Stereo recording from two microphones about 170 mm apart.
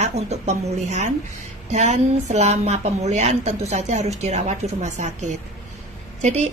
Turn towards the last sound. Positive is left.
turn(degrees=-45)  # may be behind; listen again after turning